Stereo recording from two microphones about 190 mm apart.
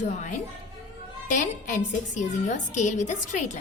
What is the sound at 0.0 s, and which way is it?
A woman's voice, 40° left (ahead or behind).